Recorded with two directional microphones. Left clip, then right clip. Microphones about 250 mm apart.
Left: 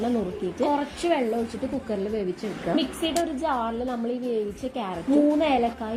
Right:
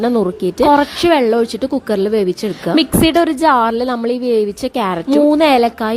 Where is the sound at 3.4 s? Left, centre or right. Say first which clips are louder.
Right 14 dB; right.